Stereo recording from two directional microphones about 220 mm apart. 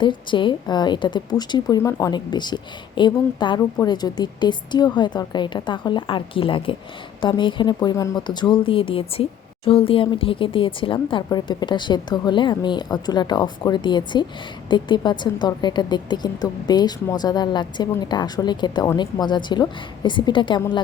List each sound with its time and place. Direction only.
0.0 s a woman's voice: 20° left (ahead or behind)